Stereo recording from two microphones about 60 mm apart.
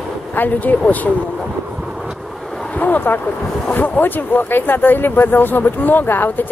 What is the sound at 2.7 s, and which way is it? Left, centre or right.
Speech, left.